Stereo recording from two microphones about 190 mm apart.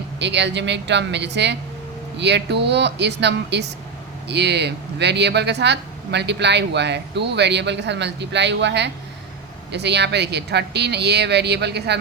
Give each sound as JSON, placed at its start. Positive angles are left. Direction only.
{"t": 0.2, "sound": "speech", "side_deg": -65}